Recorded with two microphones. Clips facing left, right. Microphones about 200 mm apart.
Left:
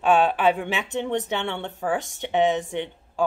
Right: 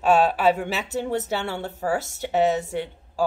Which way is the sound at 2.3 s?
40° right (ahead or behind).